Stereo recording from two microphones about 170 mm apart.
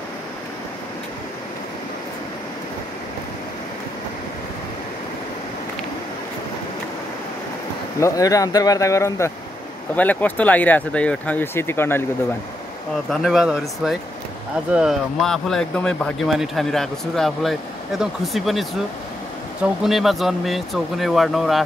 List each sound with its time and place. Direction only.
8.0 s speech: 20° left (ahead or behind)
13.1 s speech: centre (ahead or behind)
19.8 s speech: centre (ahead or behind)